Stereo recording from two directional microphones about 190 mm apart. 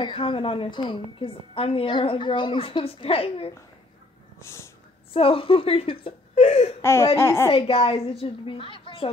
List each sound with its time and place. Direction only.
0.0 s a woman's voice: 25° left (ahead or behind)
4.5 s a child's voice: 15° left (ahead or behind)
5.1 s a woman's voice: 30° left (ahead or behind)
6.8 s a child's voice: 15° left (ahead or behind)
7.5 s a woman's voice: 30° left (ahead or behind)